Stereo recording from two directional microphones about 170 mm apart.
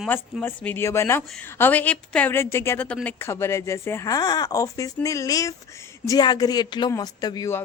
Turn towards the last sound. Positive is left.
turn(degrees=20)  # may be behind; listen again after turning